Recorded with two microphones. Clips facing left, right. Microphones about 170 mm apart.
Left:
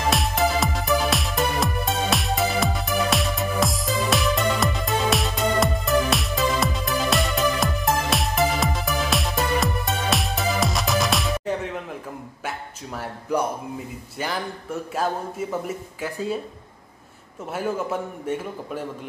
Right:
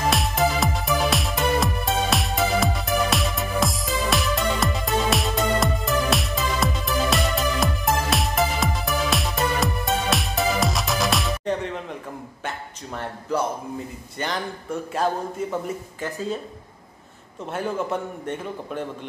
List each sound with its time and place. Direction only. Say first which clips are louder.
0.1 s music: even; centre (ahead or behind)
12.4 s a man's voice: even; 5° left (ahead or behind)
17.5 s a man's voice: even; 5° left (ahead or behind)